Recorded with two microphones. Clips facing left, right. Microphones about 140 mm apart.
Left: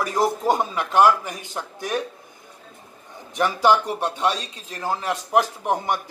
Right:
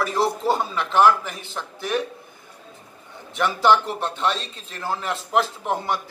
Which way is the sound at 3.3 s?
10° left (ahead or behind).